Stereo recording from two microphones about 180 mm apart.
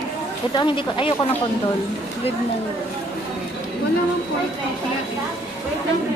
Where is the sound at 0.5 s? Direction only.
25° left (ahead or behind).